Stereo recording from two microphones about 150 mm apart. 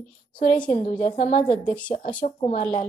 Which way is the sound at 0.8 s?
55° left (ahead or behind).